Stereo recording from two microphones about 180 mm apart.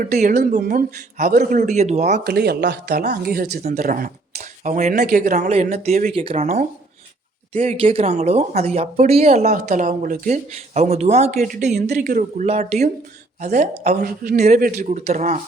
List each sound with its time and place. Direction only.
0.0 s speech: 45° right (ahead or behind)
2.2 s speech: 60° right (ahead or behind)
3.8 s speech: 55° right (ahead or behind)
4.9 s speech: 55° right (ahead or behind)
5.5 s speech: 35° right (ahead or behind)
13.9 s speech: 55° right (ahead or behind)
14.3 s speech: 40° right (ahead or behind)
14.6 s speech: 60° right (ahead or behind)
14.8 s speech: 40° right (ahead or behind)